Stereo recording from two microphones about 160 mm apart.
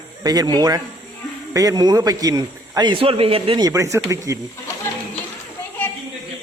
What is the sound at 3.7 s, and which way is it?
Speech, 20° right (ahead or behind).